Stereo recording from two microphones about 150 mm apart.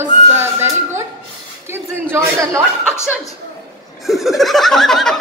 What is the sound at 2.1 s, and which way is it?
Speech, 20° right (ahead or behind).